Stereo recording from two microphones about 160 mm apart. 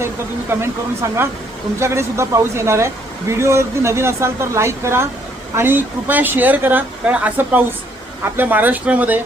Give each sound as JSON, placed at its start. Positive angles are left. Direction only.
{"t": 0.6, "sound": "speech", "side_deg": -15}